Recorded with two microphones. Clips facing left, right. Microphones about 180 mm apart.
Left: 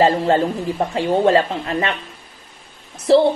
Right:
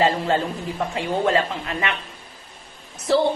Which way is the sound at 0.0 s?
30° left (ahead or behind).